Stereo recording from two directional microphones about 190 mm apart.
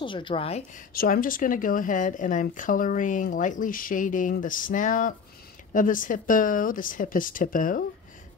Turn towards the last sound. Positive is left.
turn(degrees=45)  # may be behind; listen again after turning